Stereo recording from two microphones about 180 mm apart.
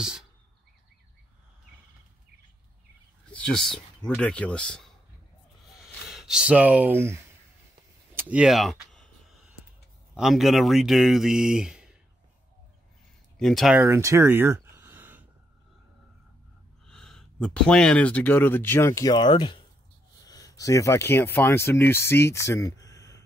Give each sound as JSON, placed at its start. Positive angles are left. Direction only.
{"t": 0.0, "sound": "speech", "side_deg": -5}
{"t": 3.3, "sound": "speech", "side_deg": 5}
{"t": 6.0, "sound": "speech", "side_deg": 0}
{"t": 8.2, "sound": "a sound", "side_deg": -5}
{"t": 10.1, "sound": "speech", "side_deg": 0}
{"t": 13.4, "sound": "speech", "side_deg": 0}
{"t": 13.7, "sound": "a sound", "side_deg": -15}
{"t": 16.8, "sound": "speech", "side_deg": 5}